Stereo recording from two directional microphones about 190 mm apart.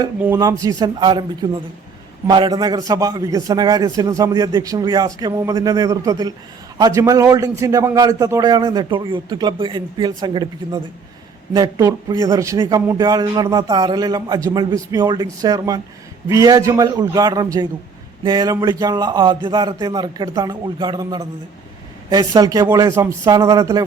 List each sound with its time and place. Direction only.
0.6 s a man's voice: 20° right (ahead or behind)